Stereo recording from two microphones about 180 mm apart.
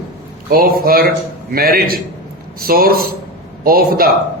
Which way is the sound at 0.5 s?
55° right (ahead or behind).